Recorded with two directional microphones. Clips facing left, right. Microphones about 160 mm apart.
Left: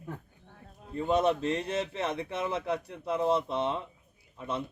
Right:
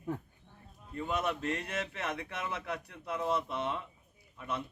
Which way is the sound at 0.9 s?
30° left (ahead or behind).